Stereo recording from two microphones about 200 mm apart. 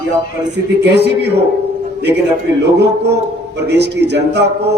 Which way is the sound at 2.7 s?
60° right (ahead or behind).